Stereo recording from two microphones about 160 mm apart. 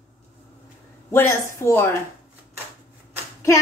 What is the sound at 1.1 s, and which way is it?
Speech, 15° left (ahead or behind).